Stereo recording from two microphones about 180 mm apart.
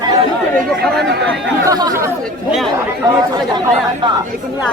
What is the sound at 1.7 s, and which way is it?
Speech, 20° right (ahead or behind).